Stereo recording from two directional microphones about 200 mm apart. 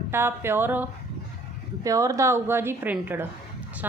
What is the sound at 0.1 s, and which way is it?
A woman's voice, 10° right (ahead or behind).